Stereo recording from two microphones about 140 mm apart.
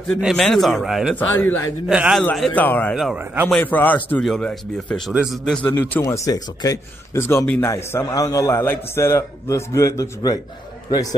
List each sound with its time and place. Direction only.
0.4 s speech: 5° left (ahead or behind)
1.1 s speech: 15° left (ahead or behind)
1.9 s a man's voice: 10° right (ahead or behind)
2.3 s speech: centre (ahead or behind)
2.6 s speech: 10° left (ahead or behind)
2.9 s speech: centre (ahead or behind)
3.4 s speech: 10° left (ahead or behind)
5.1 s speech: 5° right (ahead or behind)
5.5 s a man's voice: 10° left (ahead or behind)